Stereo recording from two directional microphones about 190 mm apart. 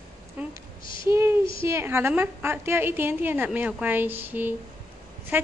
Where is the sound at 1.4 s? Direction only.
30° left (ahead or behind).